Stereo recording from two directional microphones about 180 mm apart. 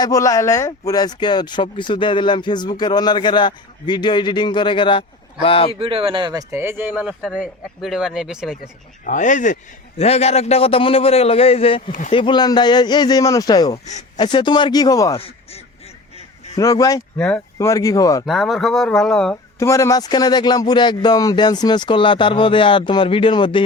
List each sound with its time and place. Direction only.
0.0 s speech: 20° left (ahead or behind)
5.8 s speech: 30° right (ahead or behind)
6.5 s speech: 10° right (ahead or behind)
9.0 s a man's voice: 45° left (ahead or behind)
11.9 s speech: 45° left (ahead or behind)
12.1 s speech: 25° left (ahead or behind)
15.2 s quack: 35° left (ahead or behind)
16.6 s speech: 20° left (ahead or behind)
17.2 s speech: 5° left (ahead or behind)
18.3 s speech: centre (ahead or behind)
19.5 s speech: 15° left (ahead or behind)